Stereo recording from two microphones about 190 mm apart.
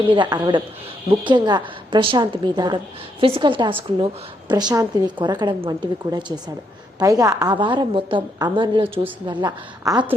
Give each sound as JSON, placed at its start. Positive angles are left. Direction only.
{"t": 0.1, "sound": "a woman's voice", "side_deg": -25}